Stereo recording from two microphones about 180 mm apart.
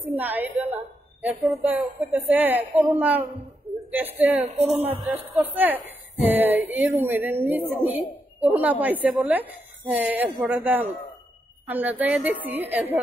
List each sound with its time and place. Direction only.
0.1 s a woman's voice: 10° right (ahead or behind)
4.4 s speech: 35° right (ahead or behind)
5.1 s a woman's voice: 10° right (ahead or behind)